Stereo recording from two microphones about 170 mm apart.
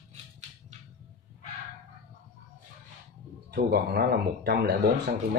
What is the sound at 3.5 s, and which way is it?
Speech, 70° right (ahead or behind).